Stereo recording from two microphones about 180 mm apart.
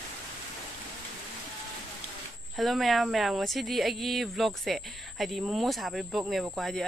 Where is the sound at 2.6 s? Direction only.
Centre (ahead or behind).